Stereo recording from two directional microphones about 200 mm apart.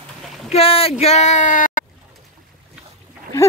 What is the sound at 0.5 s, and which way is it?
Speech, 30° left (ahead or behind).